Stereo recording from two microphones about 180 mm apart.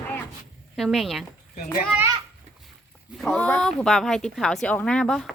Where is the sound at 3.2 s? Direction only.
5° left (ahead or behind).